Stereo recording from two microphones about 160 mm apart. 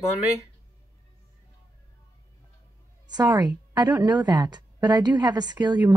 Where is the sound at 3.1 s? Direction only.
25° right (ahead or behind).